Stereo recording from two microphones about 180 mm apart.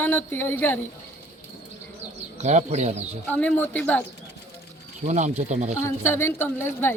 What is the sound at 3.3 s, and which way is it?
Speech, 10° left (ahead or behind).